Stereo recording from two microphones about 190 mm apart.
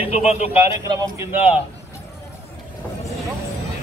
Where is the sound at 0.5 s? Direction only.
15° right (ahead or behind).